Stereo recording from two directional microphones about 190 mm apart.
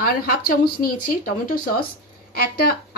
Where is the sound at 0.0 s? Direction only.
50° left (ahead or behind).